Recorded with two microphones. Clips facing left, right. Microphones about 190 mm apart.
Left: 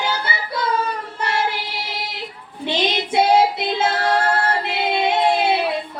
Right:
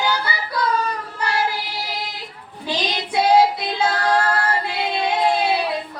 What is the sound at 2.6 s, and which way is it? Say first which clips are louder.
Female singing: left 3 dB; 25° left (ahead or behind).